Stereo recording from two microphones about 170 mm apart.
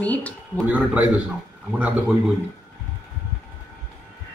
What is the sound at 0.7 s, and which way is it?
A man's voice, 10° right (ahead or behind).